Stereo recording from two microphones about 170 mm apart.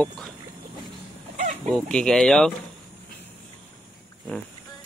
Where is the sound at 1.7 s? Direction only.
5° left (ahead or behind).